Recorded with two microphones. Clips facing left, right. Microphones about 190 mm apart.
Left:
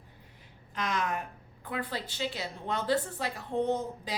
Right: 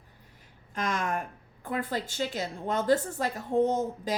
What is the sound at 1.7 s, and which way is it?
A woman's voice, 45° right (ahead or behind).